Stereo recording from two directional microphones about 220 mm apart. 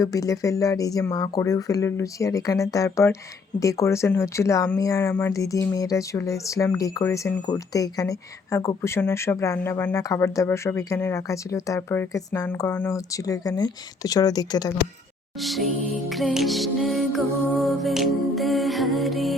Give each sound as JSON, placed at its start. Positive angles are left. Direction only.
{"t": 0.0, "sound": "speech", "side_deg": 15}
{"t": 15.4, "sound": "music", "side_deg": 0}